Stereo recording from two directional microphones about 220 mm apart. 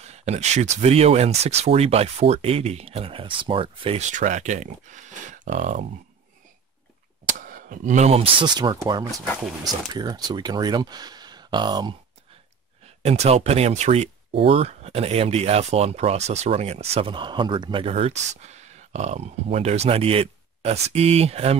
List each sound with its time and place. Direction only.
0.0 s speech: 30° right (ahead or behind)
7.2 s speech: 35° right (ahead or behind); by 9.0 s 20° right (ahead or behind)
9.1 s speech: 5° left (ahead or behind)
9.7 s speech: 20° right (ahead or behind)